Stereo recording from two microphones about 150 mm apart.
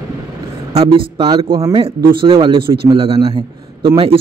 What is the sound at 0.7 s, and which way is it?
Speech, 40° right (ahead or behind).